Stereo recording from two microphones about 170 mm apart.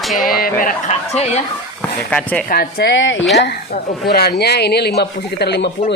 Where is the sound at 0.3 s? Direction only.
60° left (ahead or behind).